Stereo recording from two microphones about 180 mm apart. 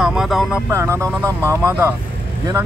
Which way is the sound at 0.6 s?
15° right (ahead or behind).